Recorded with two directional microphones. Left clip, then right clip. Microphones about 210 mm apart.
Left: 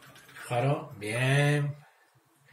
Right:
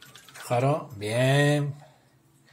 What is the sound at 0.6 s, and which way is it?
Speech, 50° right (ahead or behind).